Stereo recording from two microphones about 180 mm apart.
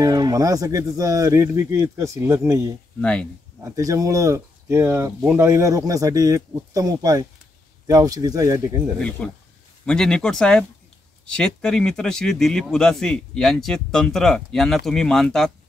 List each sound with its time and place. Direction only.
0.0 s speech: 20° right (ahead or behind)
3.0 s speech: 5° left (ahead or behind)
3.6 s speech: 20° right (ahead or behind)
9.2 s speech: 5° left (ahead or behind)